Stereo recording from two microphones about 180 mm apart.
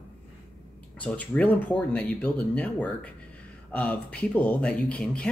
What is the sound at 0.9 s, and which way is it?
Speech, 5° left (ahead or behind).